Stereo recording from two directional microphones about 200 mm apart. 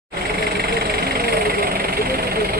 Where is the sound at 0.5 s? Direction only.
50° right (ahead or behind).